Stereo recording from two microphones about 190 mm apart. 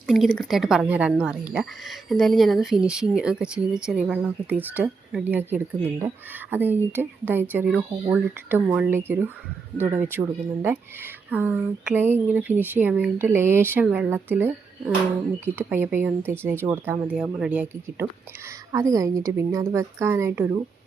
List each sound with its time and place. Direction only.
0.3 s a woman's voice: centre (ahead or behind)